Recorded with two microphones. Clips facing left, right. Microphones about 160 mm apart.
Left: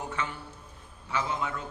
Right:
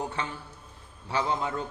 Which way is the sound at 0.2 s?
35° right (ahead or behind).